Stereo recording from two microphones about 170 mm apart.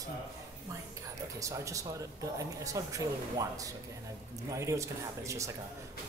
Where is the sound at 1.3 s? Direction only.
20° right (ahead or behind).